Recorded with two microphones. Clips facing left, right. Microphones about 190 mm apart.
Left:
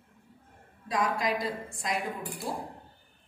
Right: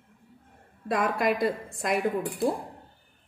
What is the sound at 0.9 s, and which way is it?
A woman's voice, 55° right (ahead or behind).